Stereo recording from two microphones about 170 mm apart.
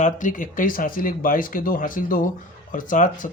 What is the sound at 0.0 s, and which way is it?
Speech, 50° left (ahead or behind).